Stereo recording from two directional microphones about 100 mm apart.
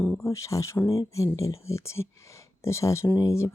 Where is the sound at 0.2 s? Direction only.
30° left (ahead or behind).